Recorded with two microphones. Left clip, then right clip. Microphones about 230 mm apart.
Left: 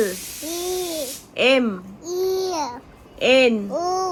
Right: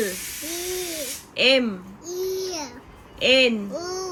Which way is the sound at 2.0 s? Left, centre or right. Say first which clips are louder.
Left 5 dB; centre.